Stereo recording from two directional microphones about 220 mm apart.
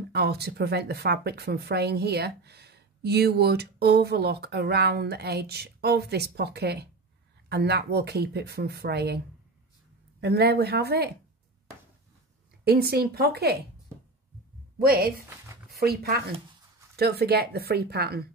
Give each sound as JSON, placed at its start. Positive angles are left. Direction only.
{"t": 0.1, "sound": "speech", "side_deg": -45}
{"t": 10.2, "sound": "speech", "side_deg": -45}
{"t": 12.6, "sound": "speech", "side_deg": -45}
{"t": 14.8, "sound": "speech", "side_deg": -45}